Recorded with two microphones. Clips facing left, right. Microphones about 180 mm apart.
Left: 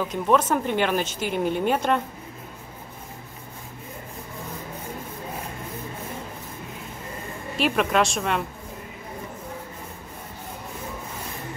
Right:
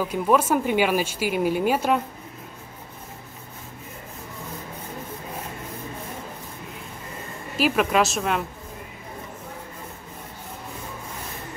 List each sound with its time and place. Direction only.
0.0 s speech: 5° right (ahead or behind)
7.5 s a woman's voice: 5° right (ahead or behind)